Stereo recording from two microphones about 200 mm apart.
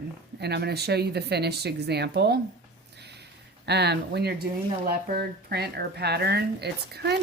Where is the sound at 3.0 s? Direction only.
55° right (ahead or behind).